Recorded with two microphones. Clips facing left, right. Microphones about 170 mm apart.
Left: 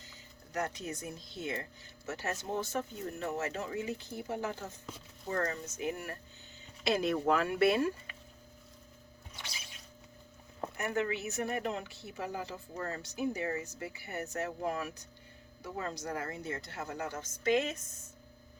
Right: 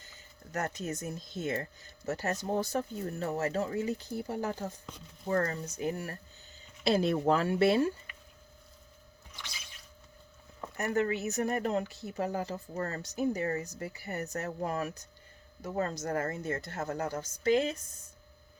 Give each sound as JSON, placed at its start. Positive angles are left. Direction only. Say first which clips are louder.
{"t": 0.0, "sound": "speech", "louder": "right 1 dB", "side_deg": -50}
{"t": 10.8, "sound": "speech", "louder": "right 4 dB", "side_deg": -40}